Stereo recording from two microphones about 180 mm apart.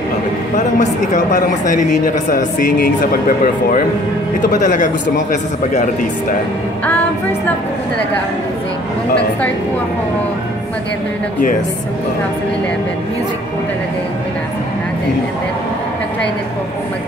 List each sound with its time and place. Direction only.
0.7 s a woman's voice: 45° left (ahead or behind)